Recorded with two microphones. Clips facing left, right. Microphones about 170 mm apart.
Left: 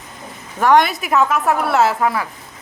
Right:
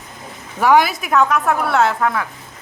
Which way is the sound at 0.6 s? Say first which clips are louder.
Even; 5° right (ahead or behind).